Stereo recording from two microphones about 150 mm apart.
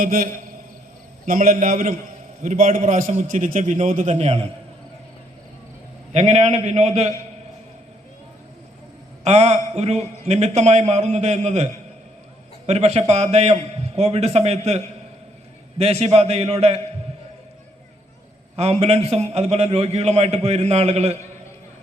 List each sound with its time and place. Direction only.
0.0 s a man's voice: 70° right (ahead or behind)
2.4 s a man's voice: 55° right (ahead or behind)
6.1 s a man's voice: 45° right (ahead or behind)
9.2 s a man's voice: 45° right (ahead or behind)
15.8 s a man's voice: 45° right (ahead or behind)
18.5 s a man's voice: 45° right (ahead or behind)